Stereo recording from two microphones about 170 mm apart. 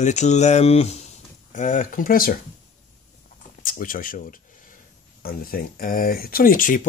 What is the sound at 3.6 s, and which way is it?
Speech, 55° left (ahead or behind).